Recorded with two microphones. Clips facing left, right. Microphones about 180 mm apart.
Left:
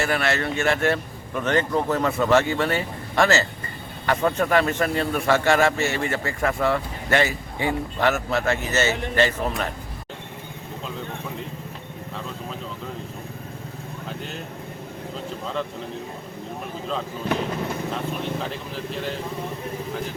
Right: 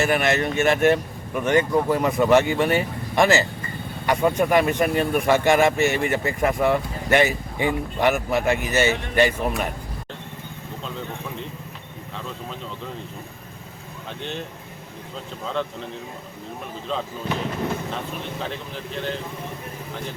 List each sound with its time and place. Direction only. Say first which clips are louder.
0.0 s a man's voice: right 3 dB; 20° right (ahead or behind)
14.2 s speech: right 7 dB; 5° left (ahead or behind)
18.4 s speech: left 1 dB; centre (ahead or behind)